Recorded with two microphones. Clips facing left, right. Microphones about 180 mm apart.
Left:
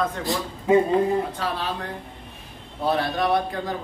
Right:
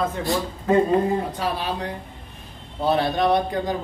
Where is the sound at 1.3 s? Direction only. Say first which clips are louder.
Right 2 dB; 10° right (ahead or behind).